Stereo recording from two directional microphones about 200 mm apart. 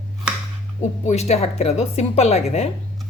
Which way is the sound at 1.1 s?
35° left (ahead or behind).